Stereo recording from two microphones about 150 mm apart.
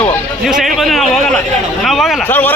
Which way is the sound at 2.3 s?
10° left (ahead or behind).